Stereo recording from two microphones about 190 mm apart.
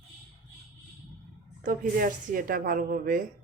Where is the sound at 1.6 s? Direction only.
45° right (ahead or behind).